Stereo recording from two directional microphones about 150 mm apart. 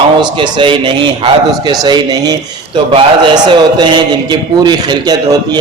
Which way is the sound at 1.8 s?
25° right (ahead or behind).